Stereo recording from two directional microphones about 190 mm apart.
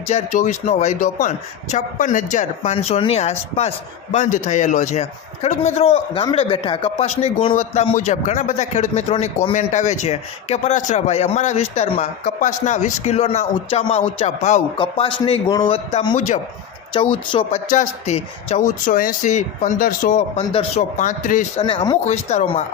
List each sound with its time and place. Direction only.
0.1 s a man's voice: 35° left (ahead or behind)
14.8 s a man's voice: 25° left (ahead or behind)
16.9 s a man's voice: 25° left (ahead or behind)
17.7 s a man's voice: 40° left (ahead or behind)
20.5 s a man's voice: 30° left (ahead or behind)
21.0 s a man's voice: 45° left (ahead or behind)
21.6 s a man's voice: 25° left (ahead or behind)